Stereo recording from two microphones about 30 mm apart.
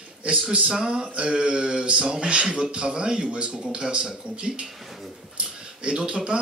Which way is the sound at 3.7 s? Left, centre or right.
Right.